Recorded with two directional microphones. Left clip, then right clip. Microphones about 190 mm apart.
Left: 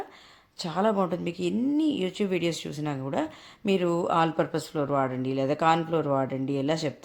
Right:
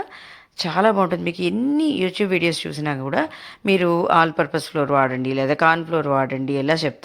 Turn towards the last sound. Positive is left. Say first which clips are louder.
# right 7 dB
turn(degrees=-15)  # may be behind; listen again after turning